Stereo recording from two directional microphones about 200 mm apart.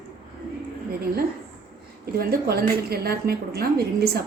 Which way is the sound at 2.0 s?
50° right (ahead or behind).